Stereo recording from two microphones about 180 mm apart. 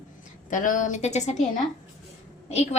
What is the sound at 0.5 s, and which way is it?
Speech, 45° left (ahead or behind).